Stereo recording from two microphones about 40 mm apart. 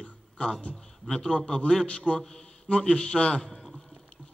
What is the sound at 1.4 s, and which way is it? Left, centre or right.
A man's voice, left.